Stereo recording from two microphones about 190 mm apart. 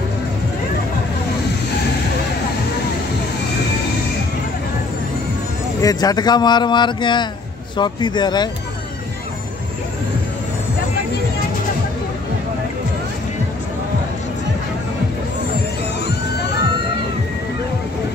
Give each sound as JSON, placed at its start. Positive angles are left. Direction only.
{"t": 5.8, "sound": "speech", "side_deg": 20}